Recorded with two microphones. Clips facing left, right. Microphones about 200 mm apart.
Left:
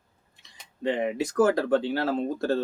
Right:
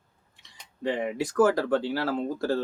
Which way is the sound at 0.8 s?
20° left (ahead or behind).